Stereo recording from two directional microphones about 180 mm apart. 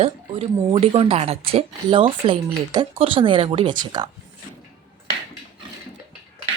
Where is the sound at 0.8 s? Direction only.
30° right (ahead or behind).